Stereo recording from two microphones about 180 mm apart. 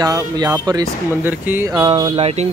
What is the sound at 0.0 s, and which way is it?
Speech, 20° right (ahead or behind).